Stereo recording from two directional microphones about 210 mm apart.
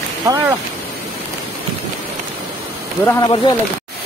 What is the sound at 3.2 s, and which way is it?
Speech, 20° left (ahead or behind).